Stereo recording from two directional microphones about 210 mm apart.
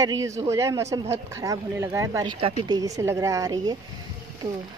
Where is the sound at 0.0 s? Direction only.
15° right (ahead or behind).